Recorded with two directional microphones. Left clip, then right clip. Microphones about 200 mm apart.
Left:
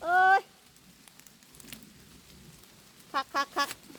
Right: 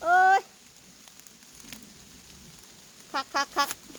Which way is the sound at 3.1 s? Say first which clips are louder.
Right 2 dB; 5° right (ahead or behind).